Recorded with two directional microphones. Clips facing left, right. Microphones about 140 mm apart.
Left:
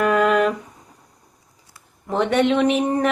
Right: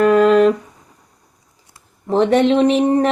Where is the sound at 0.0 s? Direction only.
30° right (ahead or behind).